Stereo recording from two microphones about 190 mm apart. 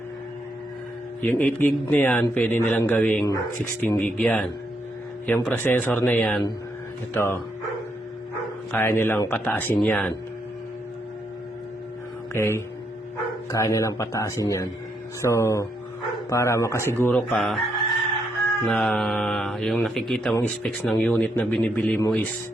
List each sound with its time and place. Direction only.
1.2 s a man's voice: 10° left (ahead or behind)
8.7 s a man's voice: 10° left (ahead or behind)
12.3 s a man's voice: 15° left (ahead or behind)
18.6 s a man's voice: 5° left (ahead or behind)